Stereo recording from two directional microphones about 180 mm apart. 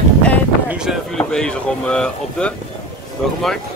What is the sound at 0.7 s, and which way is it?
Speech, centre (ahead or behind).